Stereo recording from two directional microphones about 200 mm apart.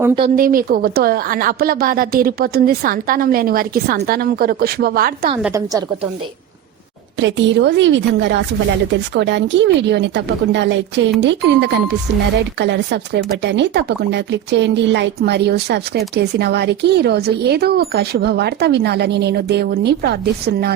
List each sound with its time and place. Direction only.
0.3 s a woman's voice: 45° right (ahead or behind)
5.4 s a woman's voice: 15° right (ahead or behind)
7.2 s speech: 65° right (ahead or behind)